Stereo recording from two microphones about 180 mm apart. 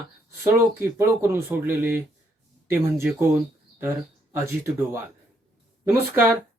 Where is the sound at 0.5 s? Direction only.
15° right (ahead or behind).